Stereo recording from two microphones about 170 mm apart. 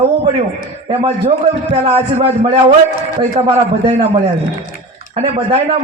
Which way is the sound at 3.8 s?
35° right (ahead or behind).